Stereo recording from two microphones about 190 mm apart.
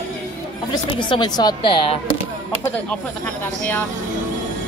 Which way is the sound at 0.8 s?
25° left (ahead or behind).